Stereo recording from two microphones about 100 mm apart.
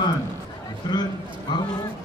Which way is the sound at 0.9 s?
45° left (ahead or behind).